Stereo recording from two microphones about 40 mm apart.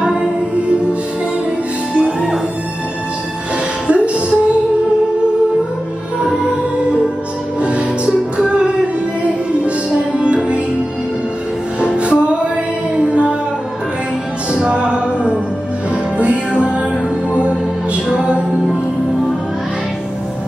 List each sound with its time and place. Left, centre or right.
2.0 s music: centre
3.8 s music: right
7.6 s music: right
11.8 s music: right
14.5 s music: right